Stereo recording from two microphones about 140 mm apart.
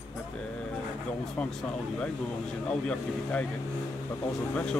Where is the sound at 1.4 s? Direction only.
10° left (ahead or behind).